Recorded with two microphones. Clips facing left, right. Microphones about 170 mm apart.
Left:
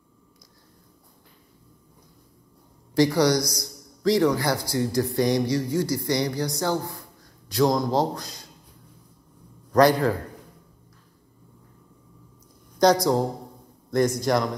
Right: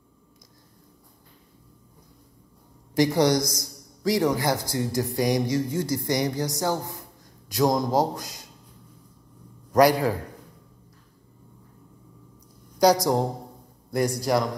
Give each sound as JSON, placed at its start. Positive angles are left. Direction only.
{"t": 2.9, "sound": "a man's voice", "side_deg": -20}
{"t": 9.7, "sound": "a man's voice", "side_deg": -15}
{"t": 12.7, "sound": "speech", "side_deg": -15}
{"t": 14.2, "sound": "speech", "side_deg": -5}